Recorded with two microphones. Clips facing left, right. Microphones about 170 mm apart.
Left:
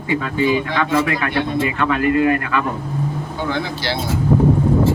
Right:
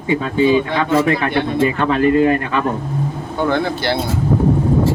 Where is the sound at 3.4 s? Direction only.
55° right (ahead or behind).